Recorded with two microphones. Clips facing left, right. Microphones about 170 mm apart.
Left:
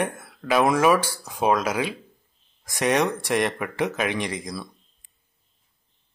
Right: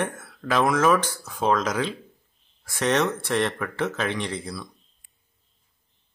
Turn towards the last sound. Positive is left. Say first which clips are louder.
# left 1 dB
turn(degrees=15)  # may be behind; listen again after turning